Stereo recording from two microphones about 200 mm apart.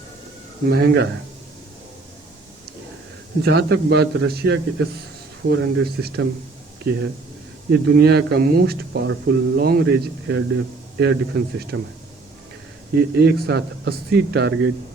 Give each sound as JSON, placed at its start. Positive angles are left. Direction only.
{"t": 0.7, "sound": "speech", "side_deg": -55}
{"t": 3.4, "sound": "speech", "side_deg": -55}
{"t": 13.0, "sound": "speech", "side_deg": -55}